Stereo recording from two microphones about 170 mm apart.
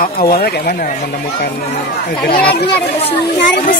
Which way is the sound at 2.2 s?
65° left (ahead or behind).